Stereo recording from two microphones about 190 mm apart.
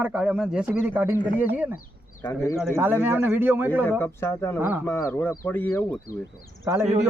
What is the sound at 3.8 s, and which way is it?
Speech, 10° left (ahead or behind).